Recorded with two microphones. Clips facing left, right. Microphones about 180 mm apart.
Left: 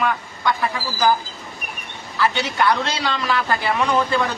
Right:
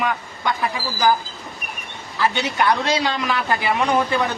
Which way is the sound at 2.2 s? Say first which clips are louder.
Even; 20° right (ahead or behind).